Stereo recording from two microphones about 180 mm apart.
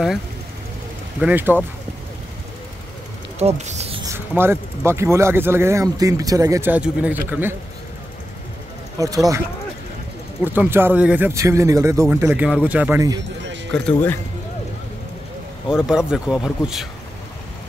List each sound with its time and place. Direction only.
1.2 s speech: 10° right (ahead or behind)
3.3 s speech: 40° right (ahead or behind)
4.0 s speech: 15° right (ahead or behind)
8.9 s speech: 20° right (ahead or behind)
10.4 s speech: 10° right (ahead or behind)
15.7 s speech: 5° right (ahead or behind)